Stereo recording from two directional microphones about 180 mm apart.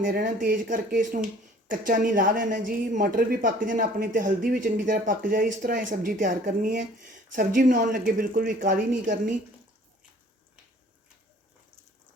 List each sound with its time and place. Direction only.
0.0 s a woman's voice: 50° right (ahead or behind)